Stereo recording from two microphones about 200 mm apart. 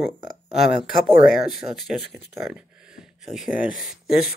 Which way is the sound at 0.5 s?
Centre (ahead or behind).